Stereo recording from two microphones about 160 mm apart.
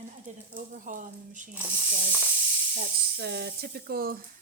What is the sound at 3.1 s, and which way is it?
Speech, 85° right.